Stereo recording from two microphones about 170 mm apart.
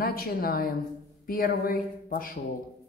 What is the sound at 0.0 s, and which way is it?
A woman's voice, 60° left (ahead or behind).